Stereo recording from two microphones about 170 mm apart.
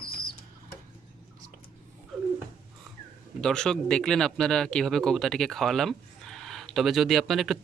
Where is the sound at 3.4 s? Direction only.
5° left (ahead or behind).